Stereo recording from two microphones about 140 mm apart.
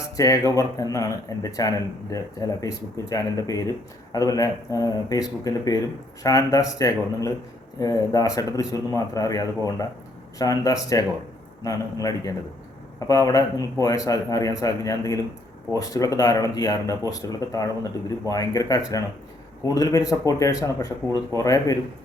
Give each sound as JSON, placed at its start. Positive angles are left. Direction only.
{"t": 0.0, "sound": "speech", "side_deg": 25}